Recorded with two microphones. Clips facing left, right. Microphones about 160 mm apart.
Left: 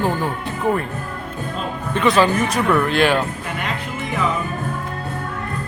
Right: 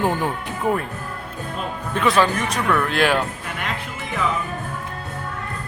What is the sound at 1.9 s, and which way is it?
Speech, centre (ahead or behind).